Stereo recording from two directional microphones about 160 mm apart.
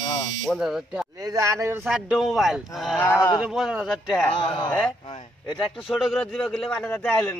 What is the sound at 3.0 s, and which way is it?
Speech, 15° left (ahead or behind).